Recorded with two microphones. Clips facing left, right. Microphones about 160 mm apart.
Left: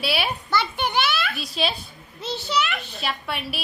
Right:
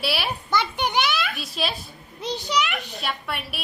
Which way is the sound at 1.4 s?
Centre (ahead or behind).